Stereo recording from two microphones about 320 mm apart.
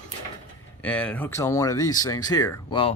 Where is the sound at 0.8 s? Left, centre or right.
Centre.